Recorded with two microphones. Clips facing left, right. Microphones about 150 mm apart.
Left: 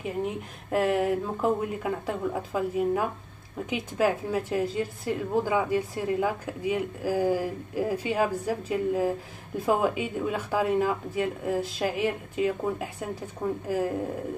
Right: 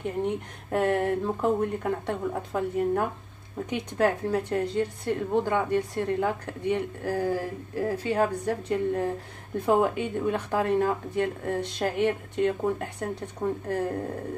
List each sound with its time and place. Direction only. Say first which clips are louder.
0.0 s a woman's voice: right 2 dB; 5° left (ahead or behind)